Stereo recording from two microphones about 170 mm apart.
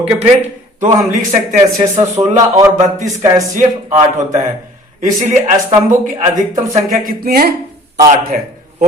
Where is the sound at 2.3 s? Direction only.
15° right (ahead or behind).